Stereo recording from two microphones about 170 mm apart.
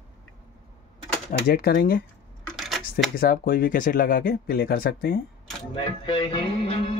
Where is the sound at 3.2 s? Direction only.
60° left (ahead or behind).